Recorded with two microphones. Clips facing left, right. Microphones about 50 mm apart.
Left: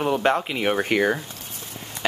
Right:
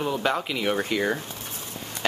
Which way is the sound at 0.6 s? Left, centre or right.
Left.